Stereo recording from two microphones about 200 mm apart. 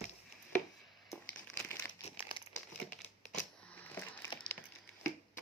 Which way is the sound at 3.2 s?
5° left (ahead or behind).